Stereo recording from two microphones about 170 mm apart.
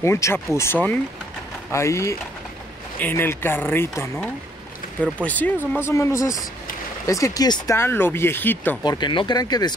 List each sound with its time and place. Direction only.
0.0 s speech: 15° left (ahead or behind)
5.2 s speech: 10° left (ahead or behind)
8.8 s speech: 25° left (ahead or behind)